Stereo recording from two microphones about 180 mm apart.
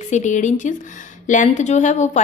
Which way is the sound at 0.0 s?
40° left (ahead or behind).